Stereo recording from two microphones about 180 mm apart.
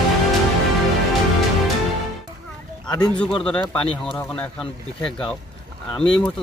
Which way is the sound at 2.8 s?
20° left (ahead or behind).